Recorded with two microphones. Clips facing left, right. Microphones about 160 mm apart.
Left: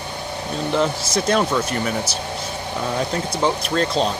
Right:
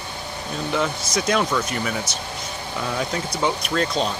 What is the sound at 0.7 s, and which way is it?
Speech, 30° left (ahead or behind).